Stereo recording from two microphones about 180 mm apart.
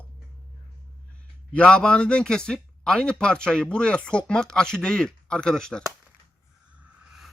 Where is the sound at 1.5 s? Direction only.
5° left (ahead or behind).